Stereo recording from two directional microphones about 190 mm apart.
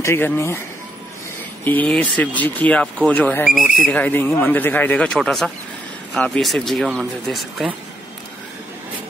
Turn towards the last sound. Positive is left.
turn(degrees=0)  # may be behind; listen again after turning